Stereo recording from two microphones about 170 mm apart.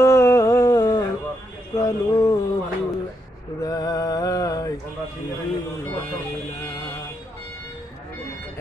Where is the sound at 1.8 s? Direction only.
20° left (ahead or behind).